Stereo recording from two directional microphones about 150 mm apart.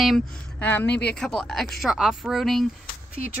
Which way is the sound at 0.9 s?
90° left.